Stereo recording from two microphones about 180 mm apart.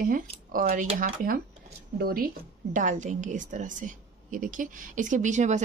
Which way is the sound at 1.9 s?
55° right (ahead or behind).